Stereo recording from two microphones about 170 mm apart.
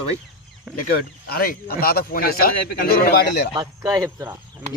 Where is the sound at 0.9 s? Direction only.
65° left (ahead or behind).